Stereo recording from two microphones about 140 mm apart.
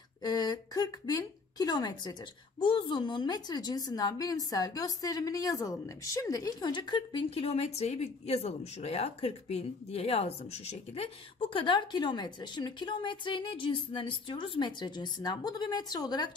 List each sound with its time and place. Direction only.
0.2 s a woman's voice: 30° left (ahead or behind)